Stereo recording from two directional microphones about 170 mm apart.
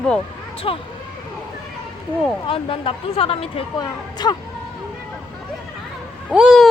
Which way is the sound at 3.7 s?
25° left (ahead or behind).